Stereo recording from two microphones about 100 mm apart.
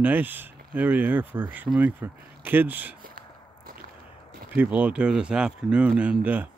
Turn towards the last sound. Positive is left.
turn(degrees=-15)  # may be behind; listen again after turning